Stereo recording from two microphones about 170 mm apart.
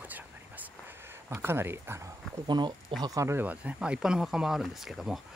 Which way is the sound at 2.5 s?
25° right (ahead or behind).